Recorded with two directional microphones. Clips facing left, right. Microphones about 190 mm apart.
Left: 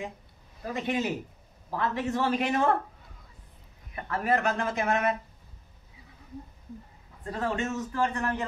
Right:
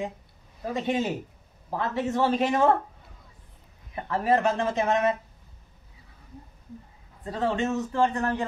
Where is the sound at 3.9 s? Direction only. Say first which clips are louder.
Right 4 dB; 30° right (ahead or behind).